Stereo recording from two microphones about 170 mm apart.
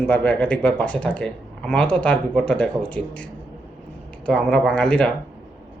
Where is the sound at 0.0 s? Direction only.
10° left (ahead or behind).